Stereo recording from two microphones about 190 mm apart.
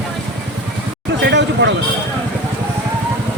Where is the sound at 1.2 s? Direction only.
65° right (ahead or behind).